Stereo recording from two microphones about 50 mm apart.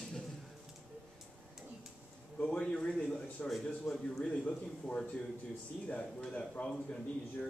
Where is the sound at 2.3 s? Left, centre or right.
Left; by 4.0 s centre.